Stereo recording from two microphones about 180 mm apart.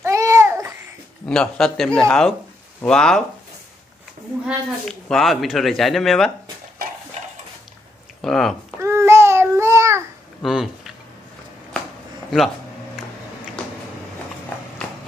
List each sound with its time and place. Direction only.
0.0 s babbling: 15° right (ahead or behind)
1.3 s speech: 5° left (ahead or behind)
4.5 s speech: centre (ahead or behind)
8.2 s speech: centre (ahead or behind)
8.8 s child singing: 15° right (ahead or behind)
10.4 s speech: centre (ahead or behind)